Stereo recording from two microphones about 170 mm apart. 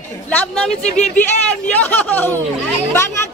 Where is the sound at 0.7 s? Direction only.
40° left (ahead or behind).